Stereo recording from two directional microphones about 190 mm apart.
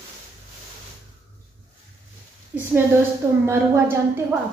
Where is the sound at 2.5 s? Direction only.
10° right (ahead or behind).